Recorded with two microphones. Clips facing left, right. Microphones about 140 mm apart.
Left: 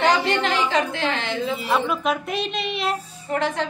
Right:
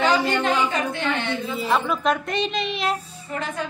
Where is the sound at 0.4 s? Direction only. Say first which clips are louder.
Left 1 dB; 90° left.